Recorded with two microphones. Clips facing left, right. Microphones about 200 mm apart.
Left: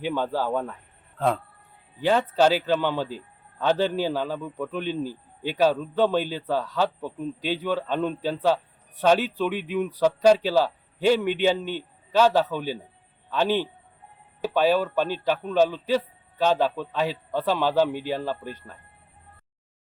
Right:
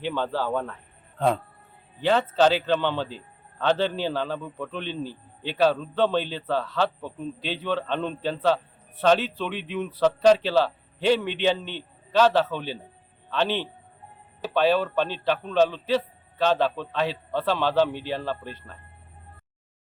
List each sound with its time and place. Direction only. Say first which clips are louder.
0.0 s a man's voice: left 1 dB; 10° left (ahead or behind)
2.0 s a man's voice: even; 10° left (ahead or behind)